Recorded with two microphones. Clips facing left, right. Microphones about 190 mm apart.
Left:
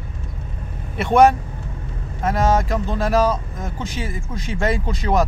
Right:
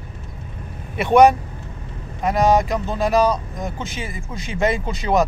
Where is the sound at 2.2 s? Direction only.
15° right (ahead or behind).